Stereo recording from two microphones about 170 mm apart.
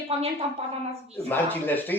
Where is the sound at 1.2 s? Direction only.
10° left (ahead or behind).